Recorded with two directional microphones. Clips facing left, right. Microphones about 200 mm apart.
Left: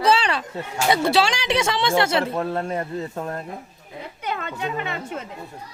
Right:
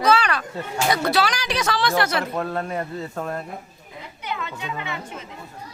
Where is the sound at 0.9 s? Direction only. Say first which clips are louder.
Left 3 dB; 25° left (ahead or behind).